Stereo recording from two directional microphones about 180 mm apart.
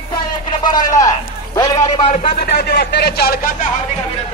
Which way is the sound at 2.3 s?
60° left (ahead or behind).